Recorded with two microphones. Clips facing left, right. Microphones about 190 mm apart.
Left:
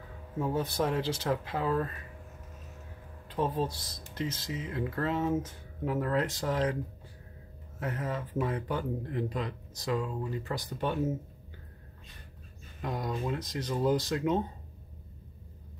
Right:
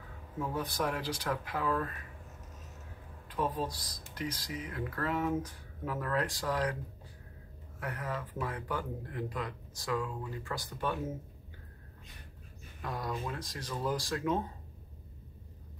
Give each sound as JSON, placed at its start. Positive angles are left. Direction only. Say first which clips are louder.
{"t": 0.4, "sound": "speech", "louder": "left 4 dB", "side_deg": 25}
{"t": 3.3, "sound": "speech", "louder": "left 3 dB", "side_deg": 25}
{"t": 7.8, "sound": "speech", "louder": "left 4 dB", "side_deg": 25}
{"t": 12.8, "sound": "speech", "louder": "left 4 dB", "side_deg": 20}